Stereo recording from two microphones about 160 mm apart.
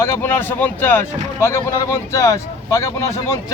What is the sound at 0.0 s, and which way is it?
Speech, 15° left (ahead or behind).